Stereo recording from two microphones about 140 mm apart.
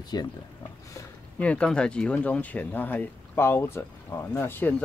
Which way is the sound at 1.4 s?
10° left (ahead or behind).